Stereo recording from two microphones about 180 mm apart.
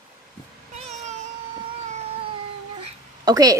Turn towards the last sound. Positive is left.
turn(degrees=-20)  # may be behind; listen again after turning